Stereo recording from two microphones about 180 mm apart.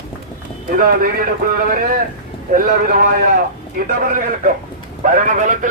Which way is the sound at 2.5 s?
50° right (ahead or behind).